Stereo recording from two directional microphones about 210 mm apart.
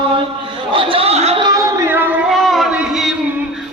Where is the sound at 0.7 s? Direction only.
25° right (ahead or behind).